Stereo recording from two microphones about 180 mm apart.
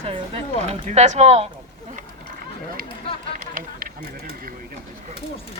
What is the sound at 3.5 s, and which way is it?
Run, 50° right (ahead or behind).